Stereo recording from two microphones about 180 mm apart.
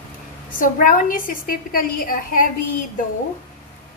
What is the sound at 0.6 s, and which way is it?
A woman's voice, 50° left (ahead or behind).